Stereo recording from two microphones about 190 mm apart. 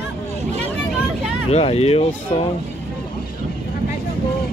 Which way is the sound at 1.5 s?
35° left (ahead or behind).